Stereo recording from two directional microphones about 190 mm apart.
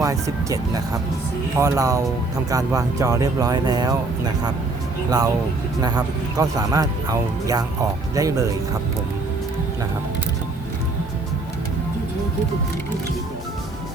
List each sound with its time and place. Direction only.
0.0 s speech: 15° right (ahead or behind)
5.8 s speech: 20° right (ahead or behind)